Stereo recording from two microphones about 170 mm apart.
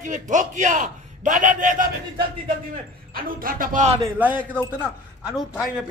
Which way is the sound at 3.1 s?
55° right (ahead or behind).